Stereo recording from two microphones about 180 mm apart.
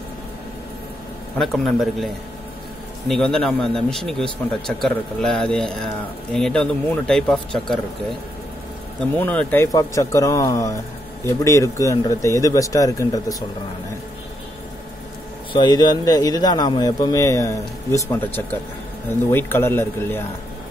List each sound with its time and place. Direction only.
1.4 s a man's voice: centre (ahead or behind)
3.1 s a man's voice: 5° left (ahead or behind)
9.2 s speech: 10° left (ahead or behind)
15.5 s a man's voice: 25° left (ahead or behind)